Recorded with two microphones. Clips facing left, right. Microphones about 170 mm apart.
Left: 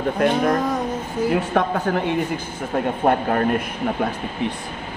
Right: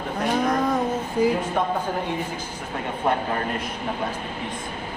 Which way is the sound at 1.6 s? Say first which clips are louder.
Left 4 dB; 90° left.